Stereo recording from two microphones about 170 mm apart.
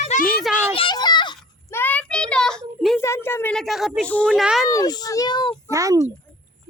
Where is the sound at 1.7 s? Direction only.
10° left (ahead or behind).